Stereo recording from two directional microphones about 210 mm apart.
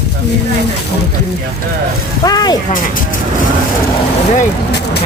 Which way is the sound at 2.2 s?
20° left (ahead or behind).